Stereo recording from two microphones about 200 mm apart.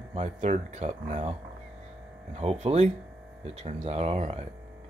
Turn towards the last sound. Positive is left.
turn(degrees=-30)  # may be behind; listen again after turning